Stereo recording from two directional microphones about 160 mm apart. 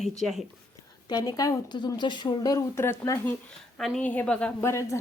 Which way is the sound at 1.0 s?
25° left (ahead or behind).